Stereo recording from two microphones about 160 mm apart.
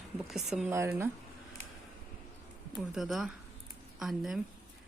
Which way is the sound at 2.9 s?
Centre (ahead or behind).